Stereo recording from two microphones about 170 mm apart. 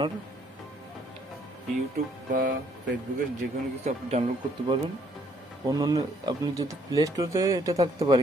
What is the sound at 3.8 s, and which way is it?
Speech, 40° right (ahead or behind).